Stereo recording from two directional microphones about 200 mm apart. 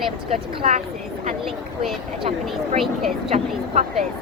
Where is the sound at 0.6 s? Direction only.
30° right (ahead or behind).